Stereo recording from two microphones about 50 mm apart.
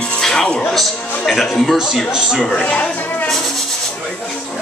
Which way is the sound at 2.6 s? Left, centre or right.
Left.